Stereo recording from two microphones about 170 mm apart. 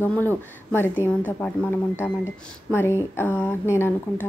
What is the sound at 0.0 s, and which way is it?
A woman's voice, 10° left (ahead or behind).